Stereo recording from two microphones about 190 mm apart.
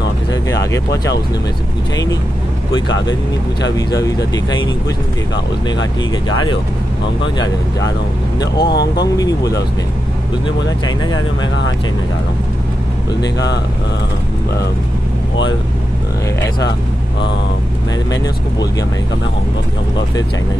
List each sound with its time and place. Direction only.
3.7 s speech: 20° left (ahead or behind)
7.2 s speech: 25° left (ahead or behind)
11.1 s speech: 75° left (ahead or behind)
18.1 s speech: 20° left (ahead or behind)